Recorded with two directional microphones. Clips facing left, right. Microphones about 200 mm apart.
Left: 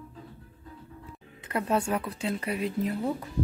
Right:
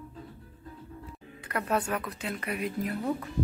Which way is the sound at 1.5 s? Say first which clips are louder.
Left 2 dB; 25° left (ahead or behind).